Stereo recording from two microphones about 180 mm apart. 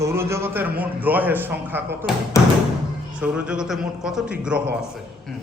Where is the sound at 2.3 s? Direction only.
15° left (ahead or behind).